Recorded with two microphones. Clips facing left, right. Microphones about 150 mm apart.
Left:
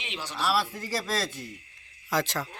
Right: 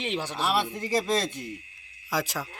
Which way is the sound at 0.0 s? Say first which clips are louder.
Right 8 dB; 50° right (ahead or behind).